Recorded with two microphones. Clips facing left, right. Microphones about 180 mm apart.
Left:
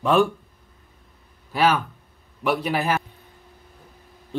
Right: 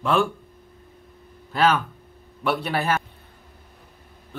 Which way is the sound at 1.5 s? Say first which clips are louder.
Even; 10° left (ahead or behind).